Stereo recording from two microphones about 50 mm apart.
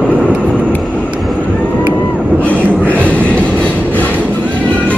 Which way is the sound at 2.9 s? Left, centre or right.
Left.